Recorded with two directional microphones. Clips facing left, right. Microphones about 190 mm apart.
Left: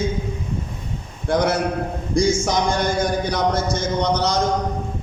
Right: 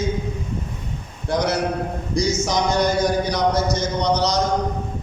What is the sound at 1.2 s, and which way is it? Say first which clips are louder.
A man's voice: left 2 dB; 55° left (ahead or behind).